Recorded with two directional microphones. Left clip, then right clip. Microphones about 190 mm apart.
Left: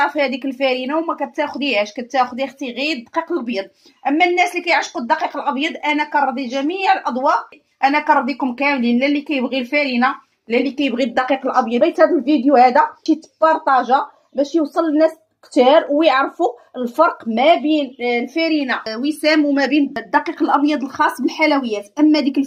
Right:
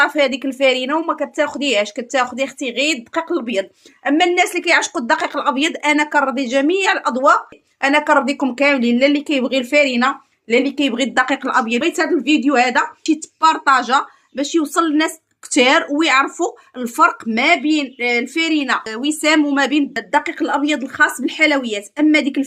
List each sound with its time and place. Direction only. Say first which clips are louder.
0.0 s a woman's voice: right 2 dB; 40° right (ahead or behind)
10.5 s a woman's voice: right 2 dB; 30° right (ahead or behind)
20.3 s a woman's voice: left 2 dB; 55° right (ahead or behind)
21.0 s speech: right 2 dB; 25° right (ahead or behind)